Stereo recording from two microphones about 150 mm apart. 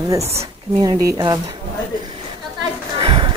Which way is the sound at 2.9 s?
35° right (ahead or behind).